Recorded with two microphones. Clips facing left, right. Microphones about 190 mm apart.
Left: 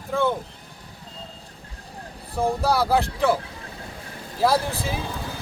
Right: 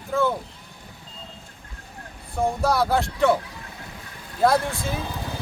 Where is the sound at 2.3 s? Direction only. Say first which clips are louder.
Even; centre (ahead or behind).